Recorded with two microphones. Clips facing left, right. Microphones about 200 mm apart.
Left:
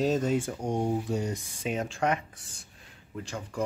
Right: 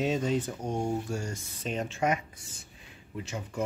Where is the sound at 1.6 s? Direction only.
5° left (ahead or behind).